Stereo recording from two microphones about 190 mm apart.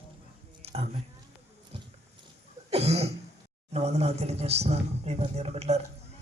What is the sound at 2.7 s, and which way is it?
Cough, 35° right (ahead or behind).